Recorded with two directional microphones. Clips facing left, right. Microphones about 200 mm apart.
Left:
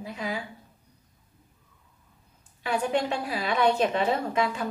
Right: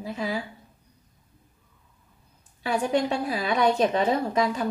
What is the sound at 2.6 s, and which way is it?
A woman's voice, 40° right (ahead or behind).